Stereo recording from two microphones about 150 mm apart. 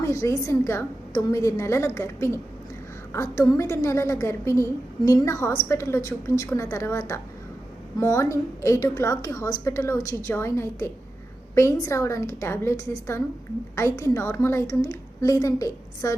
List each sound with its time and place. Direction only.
0.0 s a woman's voice: 20° left (ahead or behind)